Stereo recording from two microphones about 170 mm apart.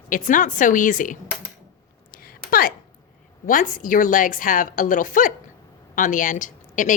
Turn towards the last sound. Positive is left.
turn(degrees=50)  # may be behind; listen again after turning